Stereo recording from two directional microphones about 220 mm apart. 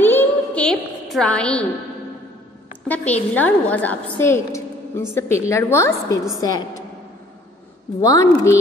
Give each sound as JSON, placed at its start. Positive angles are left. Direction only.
{"t": 0.0, "sound": "a sound", "side_deg": 10}
{"t": 2.9, "sound": "a woman's voice", "side_deg": 5}
{"t": 8.0, "sound": "a woman's voice", "side_deg": 15}